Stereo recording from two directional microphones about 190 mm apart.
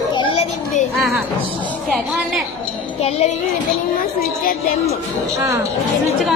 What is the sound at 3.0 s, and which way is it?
Speech, 35° left (ahead or behind).